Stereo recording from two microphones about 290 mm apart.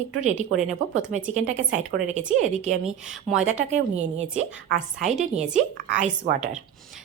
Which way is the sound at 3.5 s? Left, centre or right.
Right.